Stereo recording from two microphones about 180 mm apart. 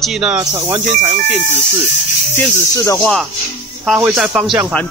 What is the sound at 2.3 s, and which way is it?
Speech, 15° left (ahead or behind).